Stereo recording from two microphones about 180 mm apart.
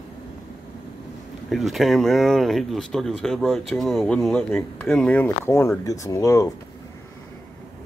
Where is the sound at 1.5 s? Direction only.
Centre (ahead or behind); by 6.5 s 15° left (ahead or behind).